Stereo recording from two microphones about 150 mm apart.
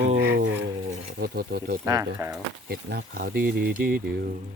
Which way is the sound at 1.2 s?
90° right.